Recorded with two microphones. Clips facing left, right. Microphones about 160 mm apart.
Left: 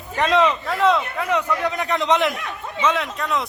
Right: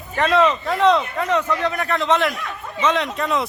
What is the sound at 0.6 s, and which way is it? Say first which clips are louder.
A man's voice: right 2 dB; centre (ahead or behind).